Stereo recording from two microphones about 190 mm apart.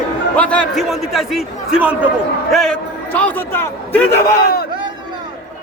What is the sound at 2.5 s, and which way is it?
Speech, 5° left (ahead or behind).